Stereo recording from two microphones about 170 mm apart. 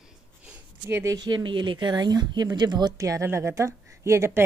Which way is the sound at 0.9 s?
15° right (ahead or behind).